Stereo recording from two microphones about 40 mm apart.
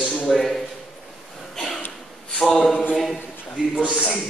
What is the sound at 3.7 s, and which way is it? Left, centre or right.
Speech, right.